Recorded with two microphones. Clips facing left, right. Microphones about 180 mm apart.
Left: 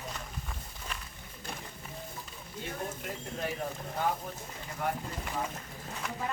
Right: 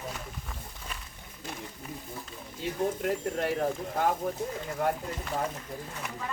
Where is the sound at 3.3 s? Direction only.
65° right (ahead or behind).